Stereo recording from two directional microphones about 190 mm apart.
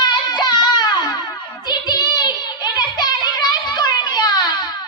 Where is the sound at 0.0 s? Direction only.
20° left (ahead or behind).